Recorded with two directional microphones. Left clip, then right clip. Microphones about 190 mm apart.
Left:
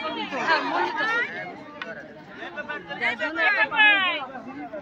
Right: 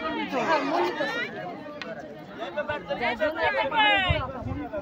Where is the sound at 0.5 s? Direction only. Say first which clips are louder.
Left 3 dB; 45° right (ahead or behind).